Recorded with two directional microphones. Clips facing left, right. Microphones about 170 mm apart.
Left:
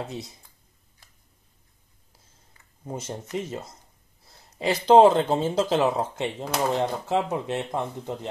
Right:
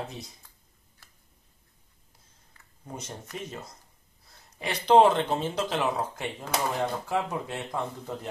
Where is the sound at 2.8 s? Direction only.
25° left (ahead or behind).